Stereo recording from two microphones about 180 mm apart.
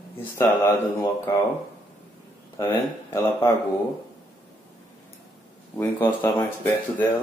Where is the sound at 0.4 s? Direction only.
15° left (ahead or behind).